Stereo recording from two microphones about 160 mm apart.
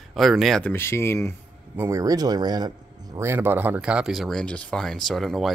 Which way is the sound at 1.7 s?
20° right (ahead or behind).